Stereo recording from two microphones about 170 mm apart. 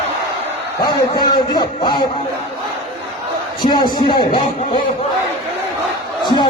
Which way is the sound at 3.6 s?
25° left (ahead or behind).